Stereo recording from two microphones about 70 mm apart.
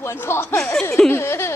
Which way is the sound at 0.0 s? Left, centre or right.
Left.